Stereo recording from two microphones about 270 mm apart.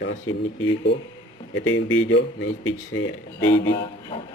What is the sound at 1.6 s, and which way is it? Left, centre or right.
Speech, left.